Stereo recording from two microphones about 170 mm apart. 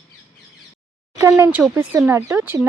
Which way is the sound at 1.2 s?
15° right (ahead or behind).